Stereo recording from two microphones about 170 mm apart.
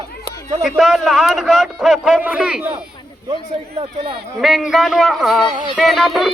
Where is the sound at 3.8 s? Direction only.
30° right (ahead or behind).